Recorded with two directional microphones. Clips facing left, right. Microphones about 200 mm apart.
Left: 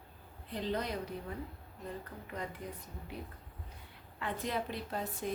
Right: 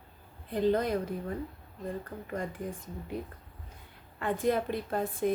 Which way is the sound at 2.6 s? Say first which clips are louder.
Right 7 dB; 50° right (ahead or behind).